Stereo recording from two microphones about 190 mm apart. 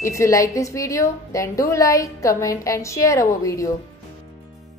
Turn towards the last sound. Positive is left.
turn(degrees=15)  # may be behind; listen again after turning